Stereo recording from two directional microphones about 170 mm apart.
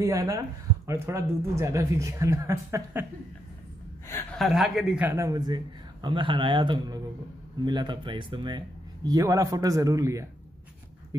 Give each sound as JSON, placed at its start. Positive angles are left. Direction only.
{"t": 0.0, "sound": "a man's voice", "side_deg": -20}
{"t": 4.1, "sound": "a man's voice", "side_deg": 5}